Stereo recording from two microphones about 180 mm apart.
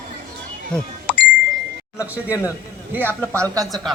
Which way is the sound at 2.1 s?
10° right (ahead or behind).